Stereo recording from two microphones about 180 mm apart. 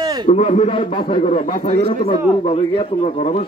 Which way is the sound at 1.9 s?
30° left (ahead or behind).